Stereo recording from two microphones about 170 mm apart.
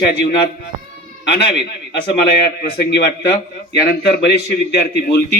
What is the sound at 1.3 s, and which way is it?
Speech, 75° left (ahead or behind).